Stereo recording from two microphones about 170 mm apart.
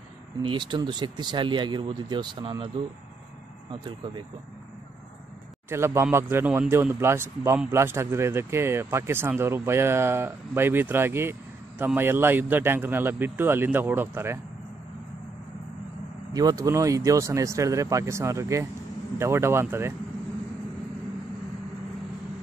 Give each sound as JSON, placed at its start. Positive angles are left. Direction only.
{"t": 0.4, "sound": "speech", "side_deg": -30}
{"t": 3.7, "sound": "speech", "side_deg": -30}
{"t": 5.7, "sound": "speech", "side_deg": -15}
{"t": 16.3, "sound": "speech", "side_deg": -20}